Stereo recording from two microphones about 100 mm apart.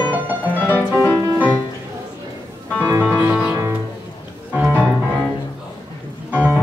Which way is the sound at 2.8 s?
15° right (ahead or behind).